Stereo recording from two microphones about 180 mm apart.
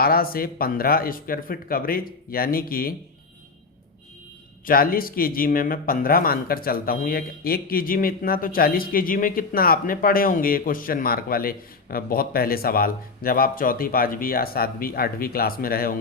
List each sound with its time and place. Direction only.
0.0 s speech: 55° left (ahead or behind)
4.6 s speech: 55° left (ahead or behind)